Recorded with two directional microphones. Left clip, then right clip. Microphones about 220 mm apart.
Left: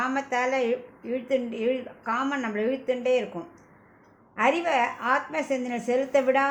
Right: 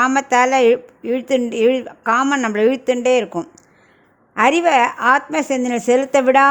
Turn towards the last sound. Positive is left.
turn(degrees=-50)  # may be behind; listen again after turning